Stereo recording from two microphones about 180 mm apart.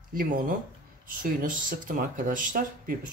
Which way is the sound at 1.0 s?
50° right (ahead or behind).